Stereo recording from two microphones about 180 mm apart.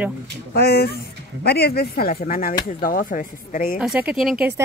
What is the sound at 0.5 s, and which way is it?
Speech, 60° left (ahead or behind).